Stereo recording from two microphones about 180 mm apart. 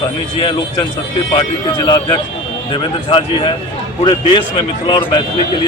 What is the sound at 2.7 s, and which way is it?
Speech, 30° left (ahead or behind).